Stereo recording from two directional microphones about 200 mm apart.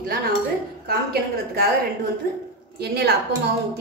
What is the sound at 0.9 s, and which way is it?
Speech, 50° right (ahead or behind).